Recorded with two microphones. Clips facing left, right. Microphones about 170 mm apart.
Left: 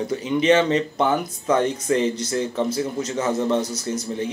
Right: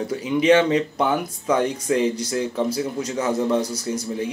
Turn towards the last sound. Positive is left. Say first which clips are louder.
# even
turn(degrees=-10)  # may be behind; listen again after turning